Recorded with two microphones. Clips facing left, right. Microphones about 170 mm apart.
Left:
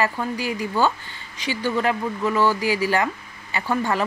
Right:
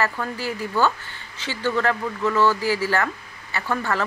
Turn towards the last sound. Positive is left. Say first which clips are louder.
# left 2 dB
turn(degrees=15)  # may be behind; listen again after turning